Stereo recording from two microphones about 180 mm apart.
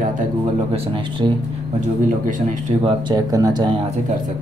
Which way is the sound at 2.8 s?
30° right (ahead or behind).